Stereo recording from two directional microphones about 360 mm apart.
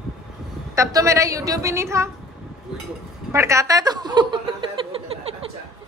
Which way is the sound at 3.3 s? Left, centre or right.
Centre.